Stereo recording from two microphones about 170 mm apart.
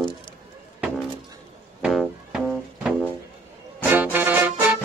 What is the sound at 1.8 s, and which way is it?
Music, 5° right (ahead or behind).